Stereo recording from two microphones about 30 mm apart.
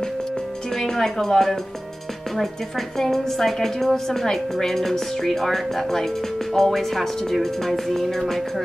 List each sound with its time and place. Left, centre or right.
0.7 s speech: centre
3.0 s a woman's voice: centre